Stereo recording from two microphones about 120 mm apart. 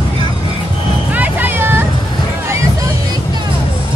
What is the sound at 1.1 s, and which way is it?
Vehicle, 15° right (ahead or behind).